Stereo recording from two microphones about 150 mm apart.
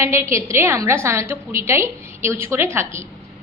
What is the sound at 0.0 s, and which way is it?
A woman's voice, 20° right (ahead or behind).